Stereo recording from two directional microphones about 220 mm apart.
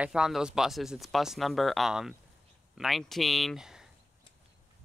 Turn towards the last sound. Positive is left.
turn(degrees=0)  # may be behind; listen again after turning